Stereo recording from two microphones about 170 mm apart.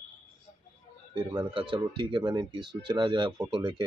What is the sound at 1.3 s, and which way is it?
Speech, 25° right (ahead or behind).